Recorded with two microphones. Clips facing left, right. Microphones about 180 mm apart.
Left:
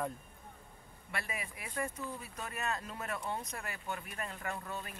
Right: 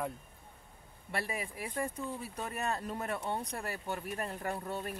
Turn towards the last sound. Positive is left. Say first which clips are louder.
# right 4 dB
turn(degrees=-40)  # may be behind; listen again after turning